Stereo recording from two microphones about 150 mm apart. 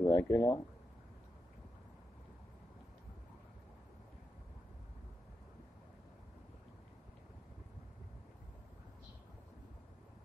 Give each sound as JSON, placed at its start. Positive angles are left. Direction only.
{"t": 0.0, "sound": "speech", "side_deg": 15}